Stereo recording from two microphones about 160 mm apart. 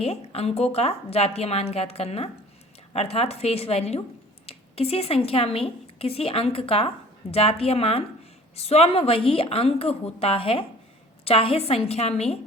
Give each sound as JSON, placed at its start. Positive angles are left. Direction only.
{"t": 0.0, "sound": "a woman's voice", "side_deg": 40}